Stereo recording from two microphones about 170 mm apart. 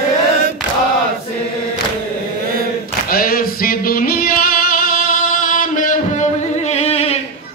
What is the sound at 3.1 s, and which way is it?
Music, 60° left (ahead or behind).